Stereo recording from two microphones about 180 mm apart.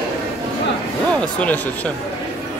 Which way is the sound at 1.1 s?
10° left (ahead or behind).